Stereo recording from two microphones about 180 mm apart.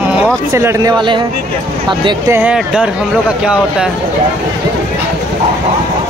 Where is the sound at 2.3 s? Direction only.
5° right (ahead or behind).